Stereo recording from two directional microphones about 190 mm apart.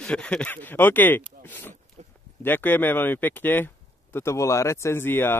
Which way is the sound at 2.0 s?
35° right (ahead or behind).